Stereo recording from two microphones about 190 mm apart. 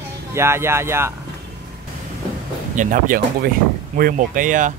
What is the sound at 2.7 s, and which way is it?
Speech, 45° right (ahead or behind).